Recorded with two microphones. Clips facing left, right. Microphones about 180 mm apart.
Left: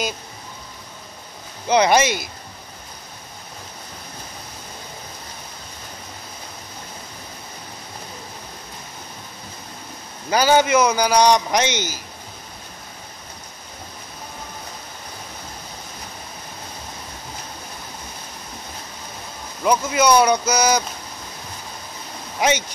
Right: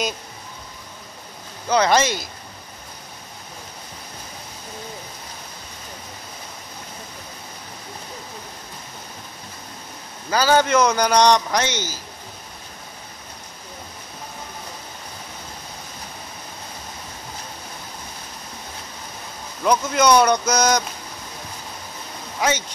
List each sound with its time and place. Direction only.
1.7 s a man's voice: 15° left (ahead or behind)
10.3 s a man's voice: 15° left (ahead or behind)
11.5 s a man's voice: 20° left (ahead or behind)
19.6 s speech: 5° left (ahead or behind)